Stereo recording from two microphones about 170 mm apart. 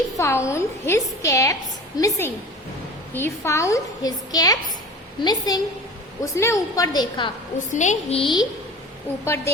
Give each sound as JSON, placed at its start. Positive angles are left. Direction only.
{"t": 0.2, "sound": "a woman's voice", "side_deg": 15}
{"t": 7.7, "sound": "a woman's voice", "side_deg": 45}
{"t": 8.2, "sound": "a woman's voice", "side_deg": 25}
{"t": 9.2, "sound": "a woman's voice", "side_deg": 15}